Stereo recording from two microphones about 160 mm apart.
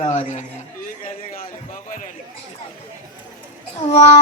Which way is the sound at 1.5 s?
55° left (ahead or behind).